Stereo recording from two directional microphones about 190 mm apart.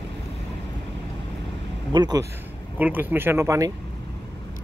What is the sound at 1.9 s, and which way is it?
Speech, 20° right (ahead or behind).